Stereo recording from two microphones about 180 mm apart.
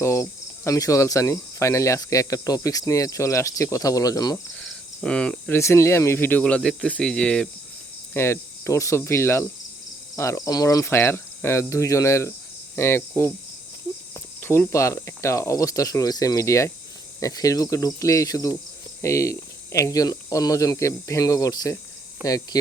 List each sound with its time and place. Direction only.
0.0 s cricket: 15° left (ahead or behind)
4.5 s cricket: 5° left (ahead or behind)
17.2 s speech: 20° left (ahead or behind)
19.0 s cricket: 15° left (ahead or behind)
22.2 s speech: 20° left (ahead or behind)